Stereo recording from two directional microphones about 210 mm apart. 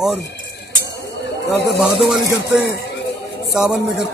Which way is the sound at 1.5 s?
50° left (ahead or behind).